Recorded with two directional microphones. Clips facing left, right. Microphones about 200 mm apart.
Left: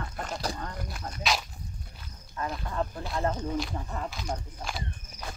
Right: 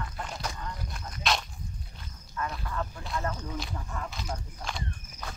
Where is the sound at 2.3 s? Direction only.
30° left (ahead or behind).